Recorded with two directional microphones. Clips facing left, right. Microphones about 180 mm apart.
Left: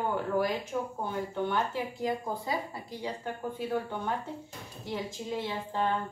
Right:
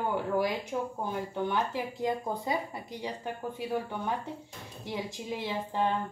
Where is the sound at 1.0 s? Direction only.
15° right (ahead or behind).